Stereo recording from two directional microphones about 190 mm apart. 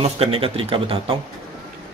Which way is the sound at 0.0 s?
30° right (ahead or behind).